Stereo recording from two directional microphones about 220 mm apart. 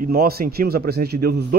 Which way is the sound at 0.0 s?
45° right (ahead or behind).